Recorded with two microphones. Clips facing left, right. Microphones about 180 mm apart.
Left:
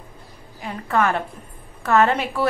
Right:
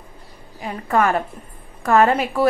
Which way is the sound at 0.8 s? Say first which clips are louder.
Right 2 dB; 10° right (ahead or behind).